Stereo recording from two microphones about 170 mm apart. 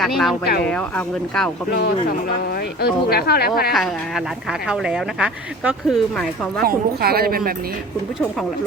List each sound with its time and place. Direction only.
0.0 s speech: centre (ahead or behind)
1.7 s speech: 65° left (ahead or behind)
3.7 s speech: centre (ahead or behind)
6.6 s speech: 65° right (ahead or behind)